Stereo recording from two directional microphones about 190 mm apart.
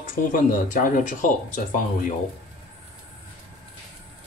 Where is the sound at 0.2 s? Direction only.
50° left (ahead or behind).